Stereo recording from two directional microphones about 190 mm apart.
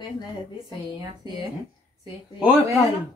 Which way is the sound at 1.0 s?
20° right (ahead or behind).